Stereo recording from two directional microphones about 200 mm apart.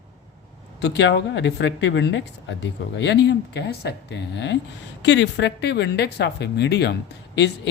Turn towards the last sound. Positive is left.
turn(degrees=60)  # may be behind; listen again after turning